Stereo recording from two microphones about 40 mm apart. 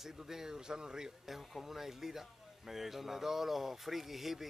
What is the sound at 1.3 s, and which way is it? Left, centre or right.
Speech, centre.